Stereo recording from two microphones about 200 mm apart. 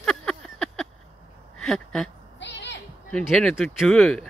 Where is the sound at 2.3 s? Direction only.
60° left (ahead or behind).